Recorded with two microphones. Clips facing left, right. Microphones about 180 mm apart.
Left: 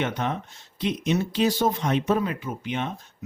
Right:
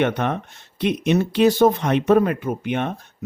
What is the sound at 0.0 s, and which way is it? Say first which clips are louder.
Speech: right 6 dB; 60° right (ahead or behind).